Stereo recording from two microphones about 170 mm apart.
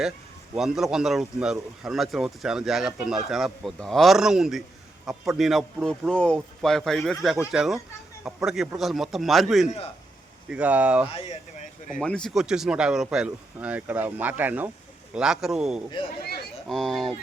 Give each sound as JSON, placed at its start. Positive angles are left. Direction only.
{"t": 0.5, "sound": "speech", "side_deg": -5}
{"t": 11.1, "sound": "speech", "side_deg": 40}
{"t": 11.9, "sound": "speech", "side_deg": 5}